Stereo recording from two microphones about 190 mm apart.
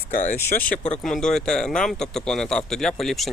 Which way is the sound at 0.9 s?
Centre (ahead or behind).